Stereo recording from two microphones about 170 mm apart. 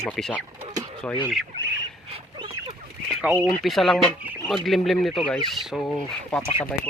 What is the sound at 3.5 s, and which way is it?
Speech, centre (ahead or behind).